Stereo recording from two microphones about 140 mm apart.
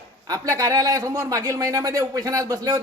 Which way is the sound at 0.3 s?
25° right (ahead or behind).